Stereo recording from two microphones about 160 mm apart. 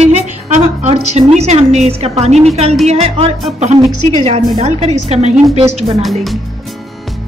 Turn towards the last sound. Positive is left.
turn(degrees=0)  # may be behind; listen again after turning